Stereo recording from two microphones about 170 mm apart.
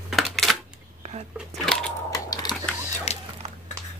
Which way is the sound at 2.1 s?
20° left (ahead or behind).